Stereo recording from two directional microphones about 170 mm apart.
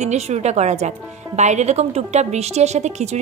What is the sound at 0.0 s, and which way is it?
A woman's voice, 40° right (ahead or behind).